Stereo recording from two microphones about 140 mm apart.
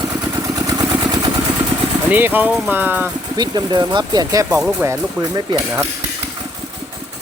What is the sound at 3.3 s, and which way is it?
Speech, 30° right (ahead or behind).